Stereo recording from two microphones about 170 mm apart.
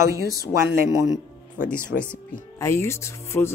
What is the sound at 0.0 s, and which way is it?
Speech, 20° right (ahead or behind).